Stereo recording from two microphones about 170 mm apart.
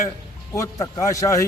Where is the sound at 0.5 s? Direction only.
20° left (ahead or behind).